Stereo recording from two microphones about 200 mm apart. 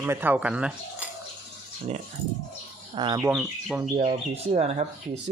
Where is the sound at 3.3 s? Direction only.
5° right (ahead or behind).